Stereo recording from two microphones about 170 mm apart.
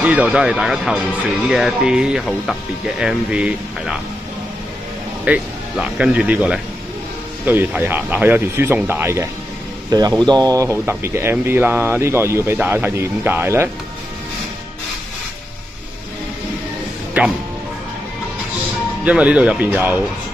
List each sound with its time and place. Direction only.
0.0 s speech: 5° right (ahead or behind)
5.2 s speech: 5° right (ahead or behind)
17.2 s speech: 10° right (ahead or behind)
19.0 s speech: 10° right (ahead or behind)